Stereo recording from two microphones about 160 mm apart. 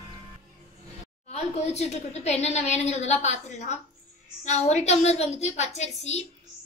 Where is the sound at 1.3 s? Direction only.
45° left (ahead or behind).